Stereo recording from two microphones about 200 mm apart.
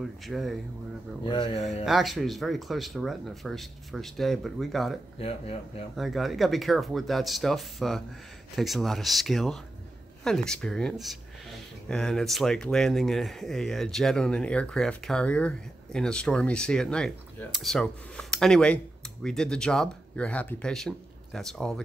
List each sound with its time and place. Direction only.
0.0 s speech: centre (ahead or behind)
1.2 s speech: 20° left (ahead or behind)
1.9 s speech: centre (ahead or behind)
5.2 s speech: 30° left (ahead or behind)
5.9 s speech: centre (ahead or behind)